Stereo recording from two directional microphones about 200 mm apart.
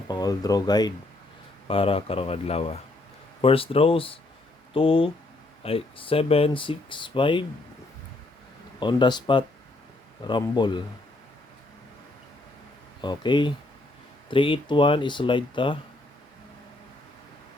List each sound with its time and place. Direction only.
0.1 s speech: 20° left (ahead or behind)
8.8 s speech: 25° left (ahead or behind)
13.0 s speech: 20° left (ahead or behind)